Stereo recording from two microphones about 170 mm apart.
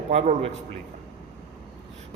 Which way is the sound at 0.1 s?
40° right (ahead or behind).